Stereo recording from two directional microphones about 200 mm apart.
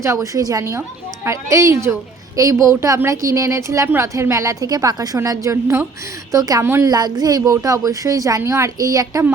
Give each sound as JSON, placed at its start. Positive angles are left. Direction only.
{"t": 0.0, "sound": "a woman's voice", "side_deg": -15}